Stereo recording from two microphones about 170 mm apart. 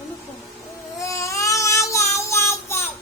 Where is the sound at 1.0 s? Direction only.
20° left (ahead or behind).